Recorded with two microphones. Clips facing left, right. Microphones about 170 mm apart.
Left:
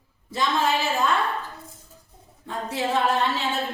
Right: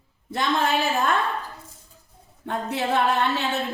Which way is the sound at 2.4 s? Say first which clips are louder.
Right 1 dB; 65° right (ahead or behind).